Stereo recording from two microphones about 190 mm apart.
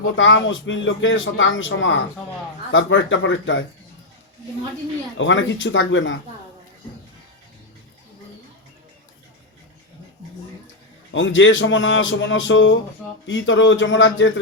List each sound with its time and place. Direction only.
0.2 s speech: 80° left
5.1 s speech: 80° left
11.1 s a man's voice: 85° left